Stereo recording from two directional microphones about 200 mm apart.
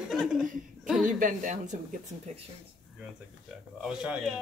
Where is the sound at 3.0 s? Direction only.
5° right (ahead or behind).